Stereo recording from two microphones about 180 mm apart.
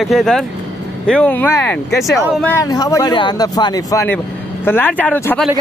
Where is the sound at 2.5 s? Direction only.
20° left (ahead or behind).